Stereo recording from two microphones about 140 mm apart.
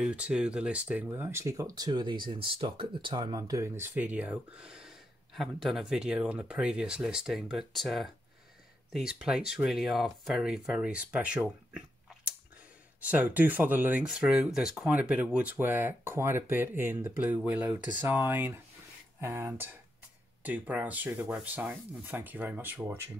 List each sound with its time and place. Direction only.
0.0 s speech: 5° right (ahead or behind)
13.0 s speech: 10° right (ahead or behind)